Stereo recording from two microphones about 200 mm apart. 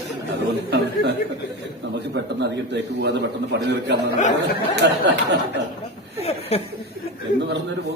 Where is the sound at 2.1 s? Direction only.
60° right (ahead or behind).